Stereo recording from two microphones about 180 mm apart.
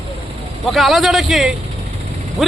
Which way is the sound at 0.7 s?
Centre (ahead or behind).